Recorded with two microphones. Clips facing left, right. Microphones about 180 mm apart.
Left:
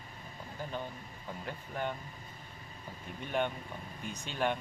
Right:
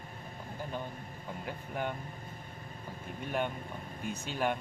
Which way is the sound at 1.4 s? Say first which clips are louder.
Right 1 dB; 10° right (ahead or behind).